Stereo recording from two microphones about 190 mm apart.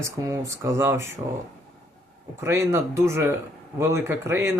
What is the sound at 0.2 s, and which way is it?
Speech, 15° right (ahead or behind).